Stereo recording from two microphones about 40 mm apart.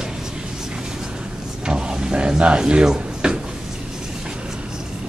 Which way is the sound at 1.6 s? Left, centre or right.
Right.